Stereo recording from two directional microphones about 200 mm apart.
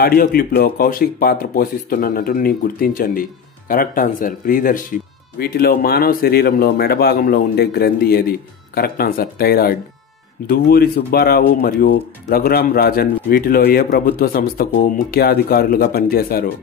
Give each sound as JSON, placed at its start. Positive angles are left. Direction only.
{"t": 0.0, "sound": "speech", "side_deg": 50}